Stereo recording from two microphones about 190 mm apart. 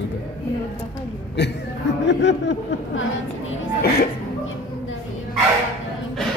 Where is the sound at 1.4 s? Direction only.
65° left (ahead or behind).